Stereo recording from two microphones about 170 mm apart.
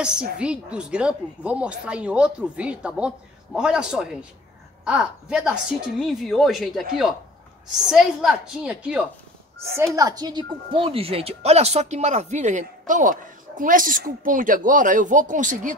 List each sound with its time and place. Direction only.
0.0 s a woman's voice: 5° right (ahead or behind)
9.9 s speech: 20° right (ahead or behind); by 15.7 s 50° right (ahead or behind)